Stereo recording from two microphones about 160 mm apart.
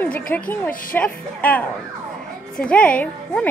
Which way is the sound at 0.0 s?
10° left (ahead or behind).